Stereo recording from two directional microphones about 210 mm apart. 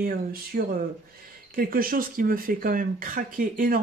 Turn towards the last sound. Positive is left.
turn(degrees=-40)  # may be behind; listen again after turning